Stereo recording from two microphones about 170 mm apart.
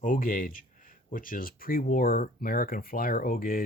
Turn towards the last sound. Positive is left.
turn(degrees=55)  # may be behind; listen again after turning